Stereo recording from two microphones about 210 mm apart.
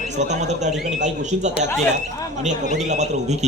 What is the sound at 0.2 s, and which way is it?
Speech, 35° right (ahead or behind).